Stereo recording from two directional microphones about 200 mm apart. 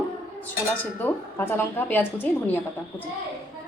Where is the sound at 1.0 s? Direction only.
10° left (ahead or behind).